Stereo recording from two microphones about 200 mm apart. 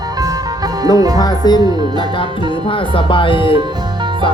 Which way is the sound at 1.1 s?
20° left (ahead or behind).